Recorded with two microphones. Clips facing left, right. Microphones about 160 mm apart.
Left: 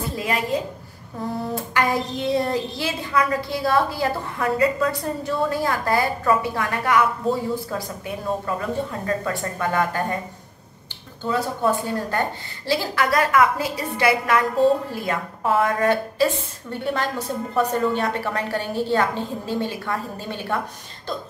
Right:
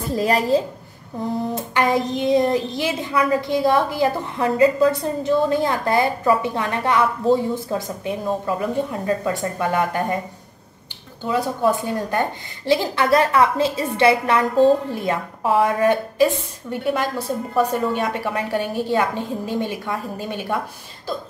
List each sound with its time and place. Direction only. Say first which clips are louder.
0.1 s a woman's voice: right 8 dB; 40° right (ahead or behind)
1.5 s a woman's voice: right 2 dB; 20° right (ahead or behind)
11.2 s a woman's voice: right 2 dB; 15° right (ahead or behind)